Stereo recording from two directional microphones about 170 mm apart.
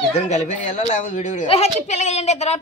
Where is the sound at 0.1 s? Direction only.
45° left (ahead or behind).